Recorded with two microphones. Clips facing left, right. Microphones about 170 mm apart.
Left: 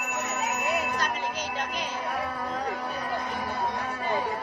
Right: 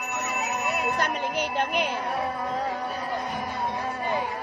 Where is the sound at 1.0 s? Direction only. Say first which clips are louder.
Right 4 dB; 60° right (ahead or behind).